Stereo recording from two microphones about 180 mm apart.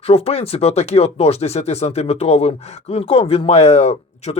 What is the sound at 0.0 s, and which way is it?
Speech, 35° left (ahead or behind).